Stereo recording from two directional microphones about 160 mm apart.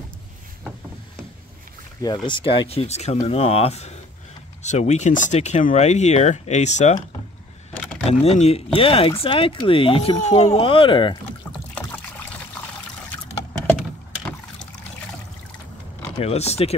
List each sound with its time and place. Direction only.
2.2 s speech: 30° left (ahead or behind)
8.1 s speech: 40° left (ahead or behind)
16.2 s speech: 40° left (ahead or behind)